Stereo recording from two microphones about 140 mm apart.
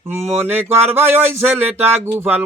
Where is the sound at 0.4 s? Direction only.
15° right (ahead or behind).